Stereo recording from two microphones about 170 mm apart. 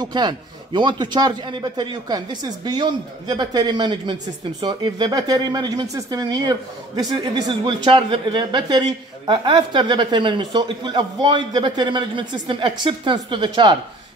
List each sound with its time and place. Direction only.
0.0 s a man's voice: 25° right (ahead or behind)